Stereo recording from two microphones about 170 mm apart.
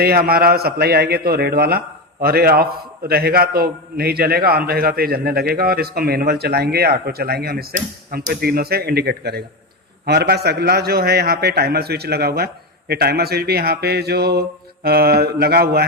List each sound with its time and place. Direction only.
0.0 s a man's voice: 65° right (ahead or behind)